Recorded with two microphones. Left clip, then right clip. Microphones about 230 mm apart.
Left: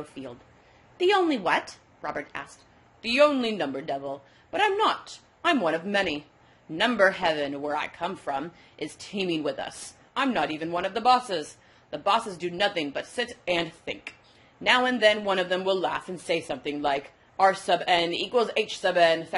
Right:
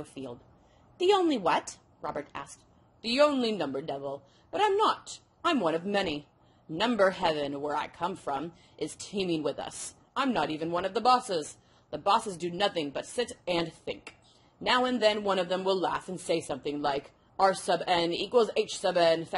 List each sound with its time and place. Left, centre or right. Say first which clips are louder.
0.2 s speech: left 1 dB; right